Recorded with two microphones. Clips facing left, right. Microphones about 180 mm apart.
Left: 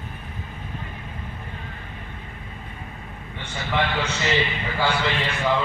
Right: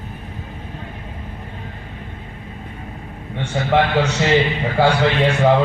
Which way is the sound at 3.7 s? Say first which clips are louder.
Right 8 dB; 75° right (ahead or behind).